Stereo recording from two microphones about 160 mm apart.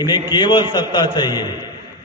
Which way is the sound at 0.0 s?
25° left (ahead or behind).